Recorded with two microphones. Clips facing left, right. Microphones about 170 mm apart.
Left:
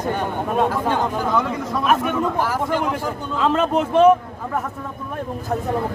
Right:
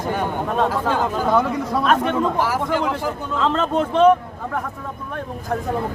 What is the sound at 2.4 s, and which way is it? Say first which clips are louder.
Speech: right 1 dB; 10° right (ahead or behind).